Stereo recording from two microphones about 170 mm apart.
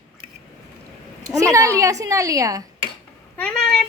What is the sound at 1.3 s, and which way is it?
A woman's voice, 20° right (ahead or behind).